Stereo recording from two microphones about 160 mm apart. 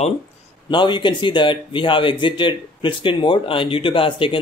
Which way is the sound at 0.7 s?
30° left (ahead or behind).